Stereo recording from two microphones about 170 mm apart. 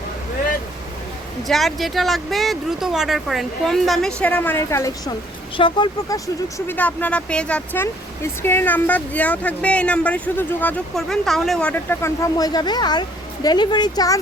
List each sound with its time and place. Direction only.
1.5 s speech: centre (ahead or behind); by 5.1 s 15° left (ahead or behind)
5.5 s speech: 25° left (ahead or behind); by 11.7 s centre (ahead or behind)
11.7 s speech: 15° left (ahead or behind)